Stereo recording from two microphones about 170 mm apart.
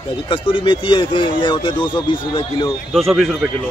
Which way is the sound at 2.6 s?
Centre (ahead or behind).